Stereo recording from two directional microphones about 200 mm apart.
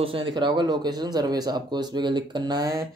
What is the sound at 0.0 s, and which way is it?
Speech, 25° right (ahead or behind).